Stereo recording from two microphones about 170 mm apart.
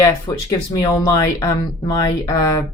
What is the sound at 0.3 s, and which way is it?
Speech, 25° left (ahead or behind).